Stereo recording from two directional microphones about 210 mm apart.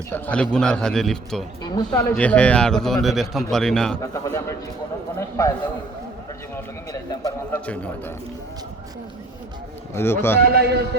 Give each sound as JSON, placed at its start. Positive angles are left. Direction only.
{"t": 0.1, "sound": "a man's voice", "side_deg": 5}
{"t": 1.6, "sound": "speech", "side_deg": 20}
{"t": 2.1, "sound": "a man's voice", "side_deg": 5}
{"t": 4.0, "sound": "a man's voice", "side_deg": 15}
{"t": 6.9, "sound": "a man's voice", "side_deg": 15}
{"t": 9.9, "sound": "a man's voice", "side_deg": 10}
{"t": 10.4, "sound": "a man's voice", "side_deg": -50}